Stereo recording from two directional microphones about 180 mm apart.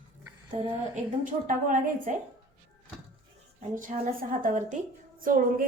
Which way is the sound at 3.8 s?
50° right (ahead or behind).